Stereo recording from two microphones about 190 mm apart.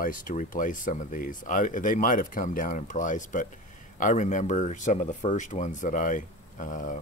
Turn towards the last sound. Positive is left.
turn(degrees=40)  # may be behind; listen again after turning